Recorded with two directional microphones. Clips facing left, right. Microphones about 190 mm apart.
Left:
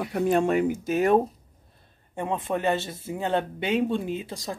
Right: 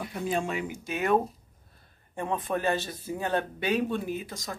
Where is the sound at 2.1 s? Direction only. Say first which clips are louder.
Left 2 dB; 25° left (ahead or behind).